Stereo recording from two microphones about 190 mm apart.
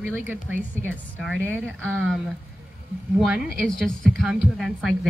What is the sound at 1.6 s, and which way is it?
Speech, 5° left (ahead or behind).